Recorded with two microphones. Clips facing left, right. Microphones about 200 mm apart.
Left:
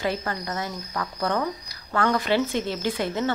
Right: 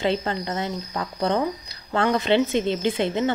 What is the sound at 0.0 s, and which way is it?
Speech, 25° right (ahead or behind).